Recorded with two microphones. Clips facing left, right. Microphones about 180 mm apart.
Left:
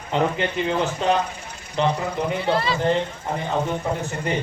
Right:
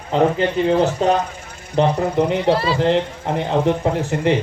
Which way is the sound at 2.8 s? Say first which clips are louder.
Right 4 dB; 85° right.